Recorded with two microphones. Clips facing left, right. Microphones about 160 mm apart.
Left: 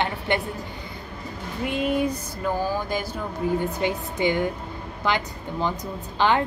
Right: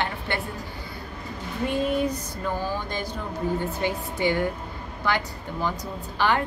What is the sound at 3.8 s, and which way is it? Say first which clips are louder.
A woman's voice: left 2 dB; 20° left (ahead or behind).